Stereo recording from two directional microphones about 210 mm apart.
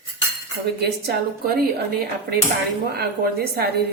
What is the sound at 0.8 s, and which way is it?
Speech, 50° right (ahead or behind).